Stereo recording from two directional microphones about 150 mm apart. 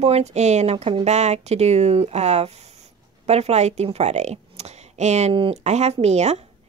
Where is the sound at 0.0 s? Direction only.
45° right (ahead or behind).